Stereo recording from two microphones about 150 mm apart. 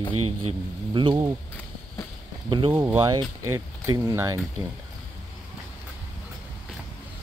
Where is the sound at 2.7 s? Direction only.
15° right (ahead or behind).